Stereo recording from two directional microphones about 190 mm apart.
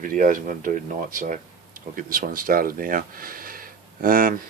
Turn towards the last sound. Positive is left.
turn(degrees=-45)  # may be behind; listen again after turning